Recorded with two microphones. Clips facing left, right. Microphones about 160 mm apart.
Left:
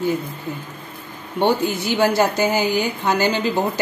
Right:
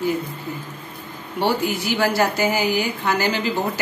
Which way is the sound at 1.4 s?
20° left (ahead or behind).